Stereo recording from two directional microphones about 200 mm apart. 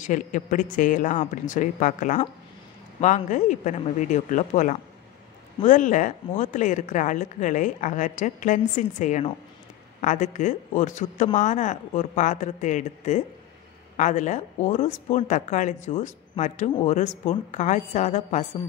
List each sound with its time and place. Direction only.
0.0 s speech: 40° left (ahead or behind)